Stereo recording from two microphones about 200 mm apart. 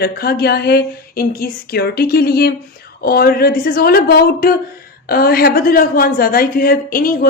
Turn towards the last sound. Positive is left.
turn(degrees=45)  # may be behind; listen again after turning